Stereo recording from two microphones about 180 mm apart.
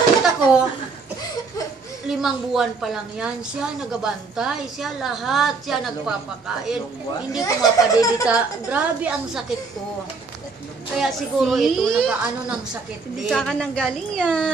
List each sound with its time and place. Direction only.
0.2 s a sound: 5° right (ahead or behind)
2.0 s a woman's voice: centre (ahead or behind)
7.4 s speech: 20° left (ahead or behind)
8.3 s a woman's voice: 10° right (ahead or behind)
11.0 s a woman's voice: centre (ahead or behind)